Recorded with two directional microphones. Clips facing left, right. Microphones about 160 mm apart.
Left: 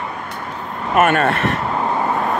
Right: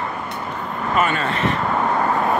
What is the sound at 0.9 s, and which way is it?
Speech, 65° left (ahead or behind).